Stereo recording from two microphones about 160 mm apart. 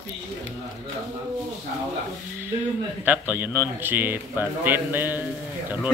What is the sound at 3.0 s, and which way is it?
Speech, 10° right (ahead or behind).